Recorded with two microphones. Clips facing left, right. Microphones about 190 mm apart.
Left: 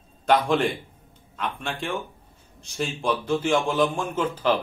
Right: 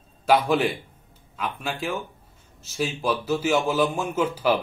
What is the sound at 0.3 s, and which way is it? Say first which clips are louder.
A man's voice: right 1 dB; 5° right (ahead or behind).